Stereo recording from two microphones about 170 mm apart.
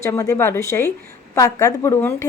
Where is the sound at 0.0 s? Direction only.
20° left (ahead or behind).